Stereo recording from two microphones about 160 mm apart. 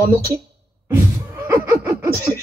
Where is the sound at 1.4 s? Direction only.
15° right (ahead or behind).